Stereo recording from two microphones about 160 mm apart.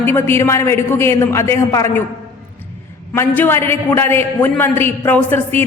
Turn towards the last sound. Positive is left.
turn(degrees=15)  # may be behind; listen again after turning